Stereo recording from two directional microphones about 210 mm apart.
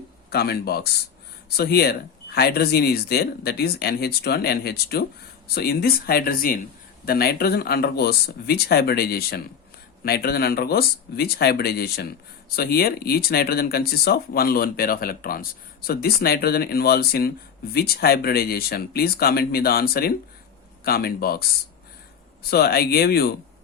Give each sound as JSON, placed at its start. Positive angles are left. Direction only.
{"t": 0.3, "sound": "speech", "side_deg": 50}
{"t": 22.4, "sound": "speech", "side_deg": 45}